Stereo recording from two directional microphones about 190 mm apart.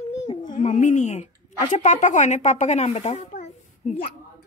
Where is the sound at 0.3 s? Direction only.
30° left (ahead or behind).